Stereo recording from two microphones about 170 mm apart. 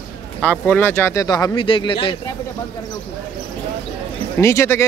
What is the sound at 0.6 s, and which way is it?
A man's voice, 10° left (ahead or behind).